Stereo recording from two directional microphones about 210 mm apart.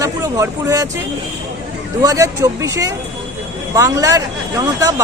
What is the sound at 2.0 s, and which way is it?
Speech, 15° right (ahead or behind).